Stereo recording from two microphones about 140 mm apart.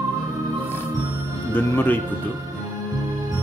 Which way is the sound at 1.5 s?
15° left (ahead or behind).